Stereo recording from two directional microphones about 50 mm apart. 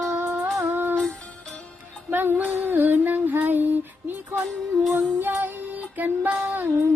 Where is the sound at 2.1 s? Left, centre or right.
Right.